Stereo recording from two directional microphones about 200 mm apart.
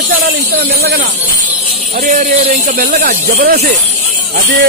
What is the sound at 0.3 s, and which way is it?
Speech, 55° right (ahead or behind).